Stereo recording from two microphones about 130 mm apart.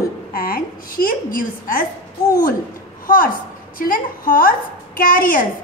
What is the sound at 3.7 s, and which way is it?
A woman's voice, 90° left.